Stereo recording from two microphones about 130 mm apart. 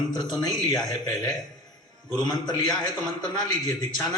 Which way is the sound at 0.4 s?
30° left (ahead or behind).